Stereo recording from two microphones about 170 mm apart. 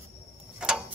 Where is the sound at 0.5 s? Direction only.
5° right (ahead or behind).